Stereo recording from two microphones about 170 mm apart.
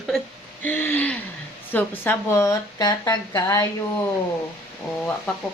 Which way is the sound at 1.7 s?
15° left (ahead or behind).